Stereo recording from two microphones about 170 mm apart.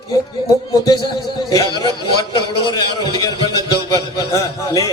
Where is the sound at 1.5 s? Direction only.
25° left (ahead or behind).